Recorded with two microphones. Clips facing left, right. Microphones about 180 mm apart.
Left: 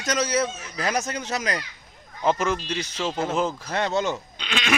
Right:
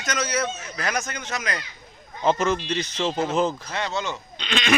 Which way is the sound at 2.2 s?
10° left (ahead or behind).